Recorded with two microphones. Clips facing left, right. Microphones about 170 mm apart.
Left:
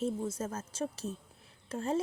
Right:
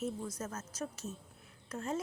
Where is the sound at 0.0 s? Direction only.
30° left (ahead or behind).